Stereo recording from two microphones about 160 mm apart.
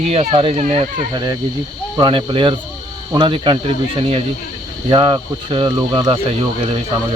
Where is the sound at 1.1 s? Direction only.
25° right (ahead or behind).